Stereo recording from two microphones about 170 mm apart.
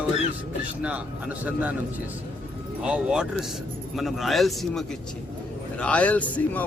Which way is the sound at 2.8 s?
5° right (ahead or behind).